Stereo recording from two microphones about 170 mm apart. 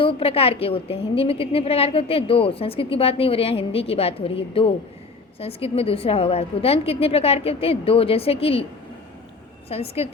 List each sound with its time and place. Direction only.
0.0 s a woman's voice: 35° left (ahead or behind)
9.7 s a woman's voice: 35° left (ahead or behind)